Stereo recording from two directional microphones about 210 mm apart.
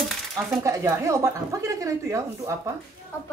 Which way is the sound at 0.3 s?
Centre (ahead or behind).